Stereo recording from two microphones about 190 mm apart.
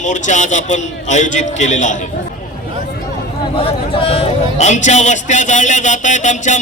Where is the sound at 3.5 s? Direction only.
30° left (ahead or behind).